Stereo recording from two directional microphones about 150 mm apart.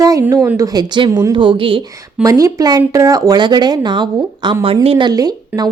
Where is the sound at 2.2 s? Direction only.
20° right (ahead or behind).